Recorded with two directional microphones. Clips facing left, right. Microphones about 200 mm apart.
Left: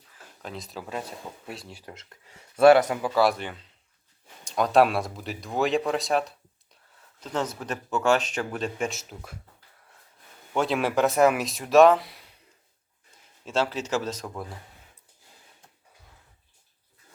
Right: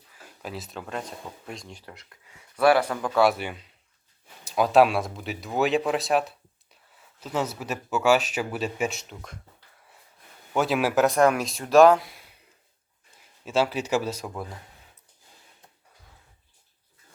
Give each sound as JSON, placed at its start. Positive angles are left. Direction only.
{"t": 0.4, "sound": "speech", "side_deg": -5}
{"t": 1.8, "sound": "a man's voice", "side_deg": 25}
{"t": 3.0, "sound": "a man's voice", "side_deg": 0}
{"t": 10.5, "sound": "speech", "side_deg": -5}
{"t": 13.4, "sound": "a man's voice", "side_deg": -10}